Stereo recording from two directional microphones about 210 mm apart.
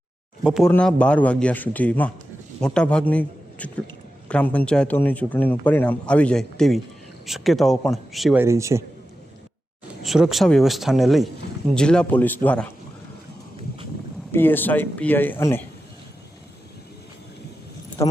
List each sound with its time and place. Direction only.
0.4 s a man's voice: centre (ahead or behind)
10.0 s a man's voice: centre (ahead or behind)
14.3 s a man's voice: 10° left (ahead or behind)
18.0 s a man's voice: 15° left (ahead or behind)